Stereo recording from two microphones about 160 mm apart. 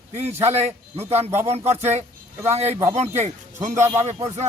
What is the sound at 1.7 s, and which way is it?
Speech, 45° right (ahead or behind).